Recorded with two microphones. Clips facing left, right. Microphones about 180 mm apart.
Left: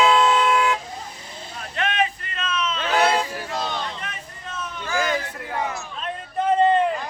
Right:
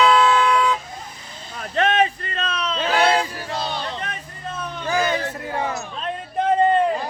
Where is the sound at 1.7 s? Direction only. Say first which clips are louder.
Right 5 dB; 40° right (ahead or behind).